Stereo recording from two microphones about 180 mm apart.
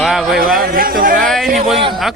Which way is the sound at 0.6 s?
55° right (ahead or behind).